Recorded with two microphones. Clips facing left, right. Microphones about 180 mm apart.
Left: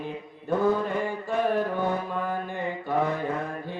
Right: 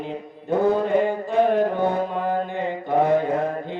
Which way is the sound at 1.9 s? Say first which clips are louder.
Right 5 dB; 20° right (ahead or behind).